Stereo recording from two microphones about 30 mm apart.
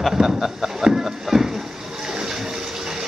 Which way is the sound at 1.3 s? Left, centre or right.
Centre.